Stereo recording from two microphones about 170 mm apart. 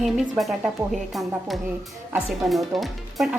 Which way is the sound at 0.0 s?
Centre (ahead or behind).